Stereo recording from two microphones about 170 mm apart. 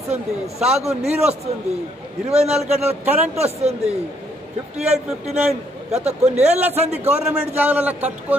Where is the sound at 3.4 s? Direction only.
40° right (ahead or behind).